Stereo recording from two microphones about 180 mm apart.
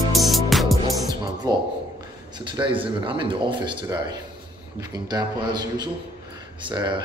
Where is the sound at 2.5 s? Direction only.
25° right (ahead or behind).